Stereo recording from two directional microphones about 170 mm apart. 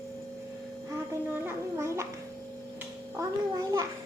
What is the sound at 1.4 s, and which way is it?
Speech, 15° right (ahead or behind).